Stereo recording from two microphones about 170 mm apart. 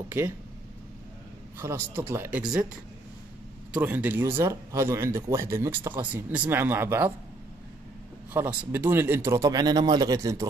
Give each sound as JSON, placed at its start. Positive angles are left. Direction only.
{"t": 1.6, "sound": "speech", "side_deg": -15}
{"t": 3.7, "sound": "speech", "side_deg": -10}
{"t": 8.3, "sound": "speech", "side_deg": -10}